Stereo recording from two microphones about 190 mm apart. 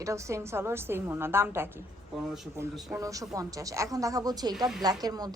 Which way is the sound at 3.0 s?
15° right (ahead or behind).